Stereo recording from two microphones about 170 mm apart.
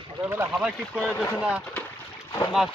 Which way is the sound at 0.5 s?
5° right (ahead or behind).